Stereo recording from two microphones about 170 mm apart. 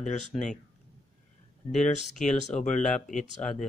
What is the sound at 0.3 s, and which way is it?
Speech, 5° left (ahead or behind).